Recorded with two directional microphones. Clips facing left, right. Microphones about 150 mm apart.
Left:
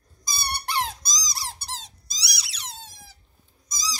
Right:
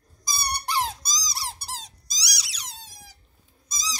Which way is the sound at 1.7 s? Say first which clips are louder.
Right 1 dB; 35° right (ahead or behind).